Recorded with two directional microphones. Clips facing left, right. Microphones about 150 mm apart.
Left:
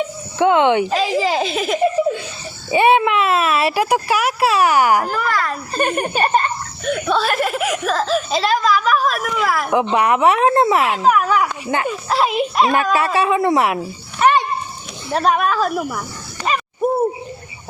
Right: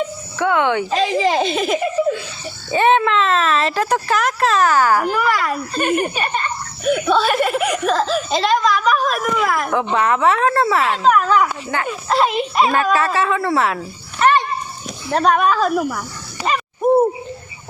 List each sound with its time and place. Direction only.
0.3 s speech: 20° left (ahead or behind)
0.9 s speech: centre (ahead or behind)
2.6 s speech: 10° left (ahead or behind)
5.3 s a woman's voice: 10° right (ahead or behind)
5.7 s laughter: 40° left (ahead or behind)
6.8 s speech: centre (ahead or behind)
9.9 s speech: 15° left (ahead or behind)
12.0 s speech: centre (ahead or behind)
13.1 s speech: 15° left (ahead or behind)
15.1 s speech: centre (ahead or behind)
16.4 s speech: 10° right (ahead or behind)